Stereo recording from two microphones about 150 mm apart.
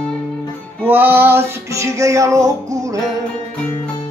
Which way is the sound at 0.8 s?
15° right (ahead or behind).